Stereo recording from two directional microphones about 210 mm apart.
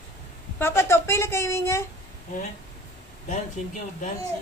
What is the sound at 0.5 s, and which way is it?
A woman's voice, 10° left (ahead or behind).